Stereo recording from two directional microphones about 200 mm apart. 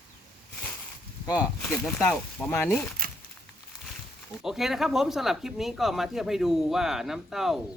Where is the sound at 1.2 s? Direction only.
15° left (ahead or behind).